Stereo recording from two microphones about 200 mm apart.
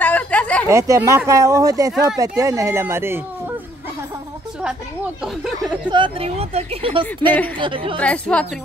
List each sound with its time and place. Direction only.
0.0 s a sound: 5° left (ahead or behind)
0.7 s speech: 15° right (ahead or behind)
5.2 s speech: centre (ahead or behind)
5.9 s speech: 25° right (ahead or behind)
8.0 s a woman's voice: 5° left (ahead or behind)